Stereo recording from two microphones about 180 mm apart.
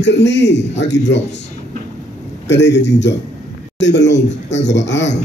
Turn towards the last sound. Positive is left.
turn(degrees=80)